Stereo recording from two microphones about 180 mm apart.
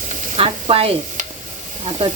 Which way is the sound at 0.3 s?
30° right (ahead or behind).